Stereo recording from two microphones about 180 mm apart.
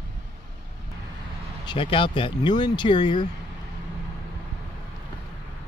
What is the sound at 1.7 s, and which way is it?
Speech, 30° left (ahead or behind).